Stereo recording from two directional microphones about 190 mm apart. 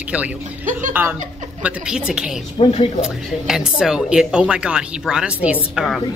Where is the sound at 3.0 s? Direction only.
5° right (ahead or behind).